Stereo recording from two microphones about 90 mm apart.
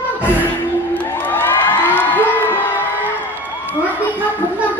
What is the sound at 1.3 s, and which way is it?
Crowd, 20° left (ahead or behind).